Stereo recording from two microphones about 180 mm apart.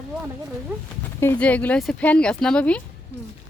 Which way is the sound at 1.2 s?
10° left (ahead or behind).